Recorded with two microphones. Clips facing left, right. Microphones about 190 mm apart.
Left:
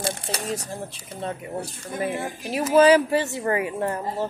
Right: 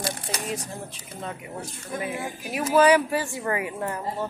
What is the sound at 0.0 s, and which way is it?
Shuffling cards, 30° left (ahead or behind).